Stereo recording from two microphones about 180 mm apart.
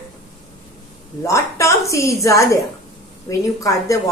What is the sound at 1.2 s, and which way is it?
A woman's voice, 15° left (ahead or behind).